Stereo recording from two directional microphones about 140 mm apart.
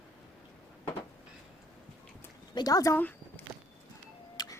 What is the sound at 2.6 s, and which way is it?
Speech, 25° left (ahead or behind).